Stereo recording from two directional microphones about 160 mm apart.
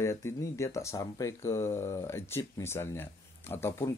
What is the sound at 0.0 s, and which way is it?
Speech, 15° left (ahead or behind).